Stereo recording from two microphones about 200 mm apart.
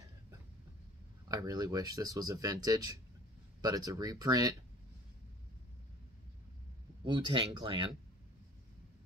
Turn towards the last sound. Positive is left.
turn(degrees=-25)  # may be behind; listen again after turning